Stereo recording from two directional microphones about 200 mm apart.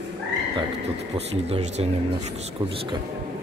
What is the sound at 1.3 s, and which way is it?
Speech, 35° right (ahead or behind).